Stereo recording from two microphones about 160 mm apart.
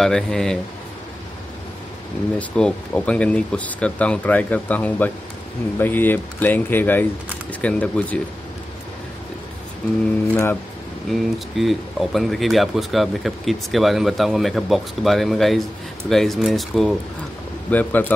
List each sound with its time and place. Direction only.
0.0 s speech: 5° left (ahead or behind)
2.3 s speech: 5° left (ahead or behind)
10.3 s speech: 15° left (ahead or behind)
11.1 s speech: centre (ahead or behind)
17.6 s speech: 10° left (ahead or behind)